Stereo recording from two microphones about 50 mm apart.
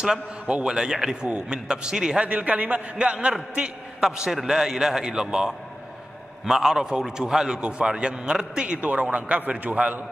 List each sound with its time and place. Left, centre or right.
0.0 s a man's voice: centre
2.2 s a man's voice: right
4.0 s a man's voice: centre; by 10.0 s right